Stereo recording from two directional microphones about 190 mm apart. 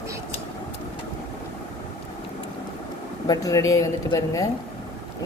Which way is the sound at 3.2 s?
15° left (ahead or behind).